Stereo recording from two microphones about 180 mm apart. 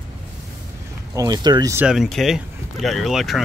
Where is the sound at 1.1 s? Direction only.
20° right (ahead or behind).